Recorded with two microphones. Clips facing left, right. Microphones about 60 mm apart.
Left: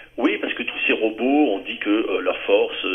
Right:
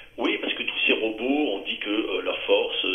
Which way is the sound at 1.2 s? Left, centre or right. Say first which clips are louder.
Left 6 dB; left.